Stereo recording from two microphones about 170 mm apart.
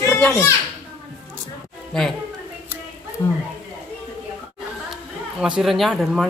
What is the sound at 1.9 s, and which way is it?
Speech, 5° left (ahead or behind).